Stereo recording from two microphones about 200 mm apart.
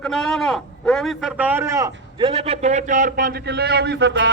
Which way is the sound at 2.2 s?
30° right (ahead or behind).